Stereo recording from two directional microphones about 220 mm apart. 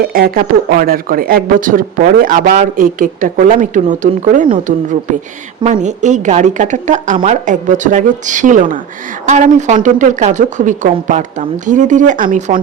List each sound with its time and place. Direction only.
0.1 s speech: 40° right (ahead or behind)
5.6 s speech: 35° right (ahead or behind)